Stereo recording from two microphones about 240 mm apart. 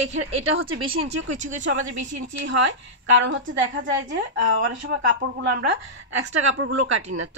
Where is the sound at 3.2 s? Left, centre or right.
Right.